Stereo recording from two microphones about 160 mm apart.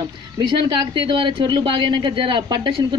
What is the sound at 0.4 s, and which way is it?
A woman's voice, 30° right (ahead or behind).